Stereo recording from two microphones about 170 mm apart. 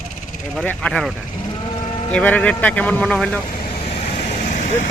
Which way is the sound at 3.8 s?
40° left (ahead or behind).